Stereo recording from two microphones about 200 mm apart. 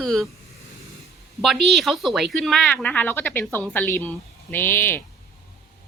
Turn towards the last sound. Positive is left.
turn(degrees=10)  # may be behind; listen again after turning